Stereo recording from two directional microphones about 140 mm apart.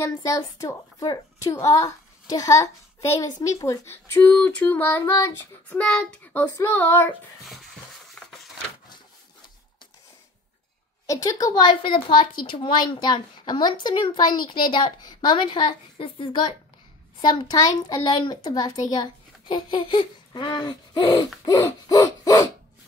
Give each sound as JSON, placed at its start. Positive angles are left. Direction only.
{"t": 0.0, "sound": "a woman's voice", "side_deg": 20}
{"t": 5.8, "sound": "child singing", "side_deg": 5}
{"t": 8.2, "sound": "a sound", "side_deg": 5}
{"t": 11.1, "sound": "a woman's voice", "side_deg": 25}